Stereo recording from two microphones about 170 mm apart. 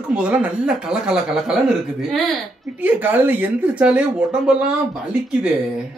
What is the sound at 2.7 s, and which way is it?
Speech, 10° right (ahead or behind).